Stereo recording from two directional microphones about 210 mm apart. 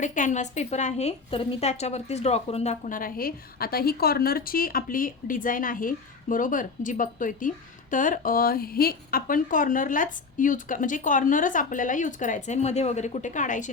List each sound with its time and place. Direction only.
0.0 s a woman's voice: 35° left (ahead or behind)